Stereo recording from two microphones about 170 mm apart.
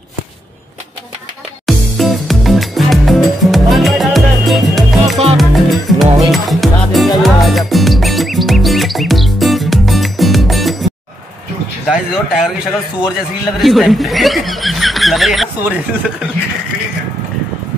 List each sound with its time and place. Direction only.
1.7 s music: centre (ahead or behind)
11.9 s a sound: 5° right (ahead or behind)
13.6 s speech: centre (ahead or behind)